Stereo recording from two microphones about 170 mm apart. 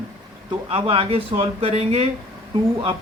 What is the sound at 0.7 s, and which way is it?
Speech, 35° right (ahead or behind).